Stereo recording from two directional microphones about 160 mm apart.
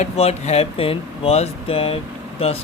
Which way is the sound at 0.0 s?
40° left (ahead or behind).